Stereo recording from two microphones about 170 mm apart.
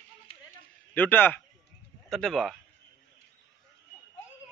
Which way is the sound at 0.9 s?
10° left (ahead or behind).